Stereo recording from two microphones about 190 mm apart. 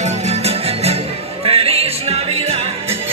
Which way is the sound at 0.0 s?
35° right (ahead or behind).